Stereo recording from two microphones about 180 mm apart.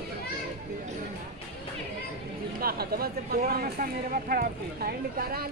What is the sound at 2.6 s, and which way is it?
Speech, 55° right (ahead or behind).